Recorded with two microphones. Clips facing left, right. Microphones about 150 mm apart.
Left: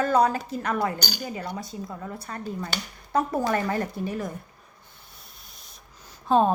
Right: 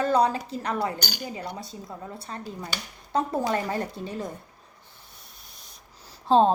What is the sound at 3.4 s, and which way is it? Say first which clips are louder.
Speech: left 2 dB; 20° right (ahead or behind).